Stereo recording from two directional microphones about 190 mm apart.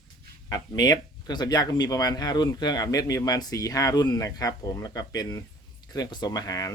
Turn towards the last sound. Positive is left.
turn(degrees=20)  # may be behind; listen again after turning